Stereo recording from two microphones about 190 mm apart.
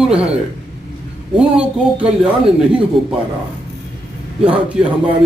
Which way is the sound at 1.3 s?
5° right (ahead or behind).